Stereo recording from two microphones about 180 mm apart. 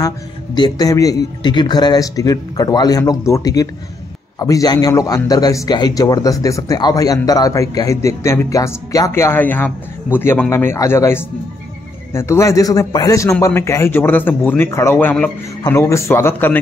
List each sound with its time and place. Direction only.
0.6 s a man's voice: 20° left (ahead or behind)